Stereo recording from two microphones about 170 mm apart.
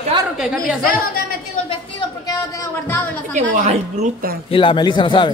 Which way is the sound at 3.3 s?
45° right (ahead or behind).